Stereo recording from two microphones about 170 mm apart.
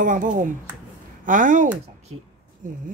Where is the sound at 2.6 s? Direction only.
50° right (ahead or behind).